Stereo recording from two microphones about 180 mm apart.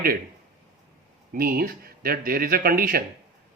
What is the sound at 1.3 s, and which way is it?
Speech, 55° right (ahead or behind).